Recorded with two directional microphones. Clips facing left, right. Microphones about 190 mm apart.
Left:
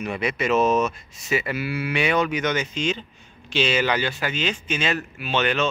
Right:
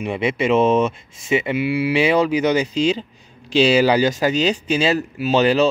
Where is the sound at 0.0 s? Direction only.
25° right (ahead or behind).